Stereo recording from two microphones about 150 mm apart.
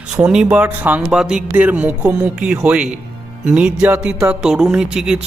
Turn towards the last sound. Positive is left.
turn(degrees=-5)  # may be behind; listen again after turning